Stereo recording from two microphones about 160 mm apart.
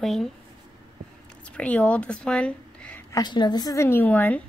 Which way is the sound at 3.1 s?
30° left (ahead or behind).